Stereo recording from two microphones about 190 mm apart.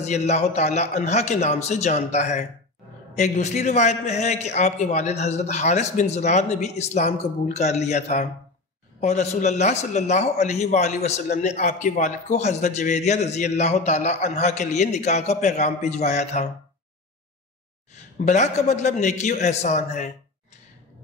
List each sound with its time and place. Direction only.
0.0 s a man's voice: 35° left (ahead or behind)
18.2 s a man's voice: 40° left (ahead or behind)